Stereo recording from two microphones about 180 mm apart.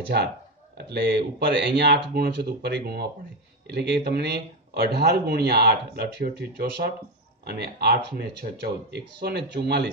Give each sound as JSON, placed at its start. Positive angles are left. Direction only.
{"t": 0.1, "sound": "speech", "side_deg": -65}